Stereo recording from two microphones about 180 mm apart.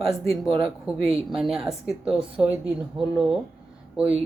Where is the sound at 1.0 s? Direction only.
35° right (ahead or behind).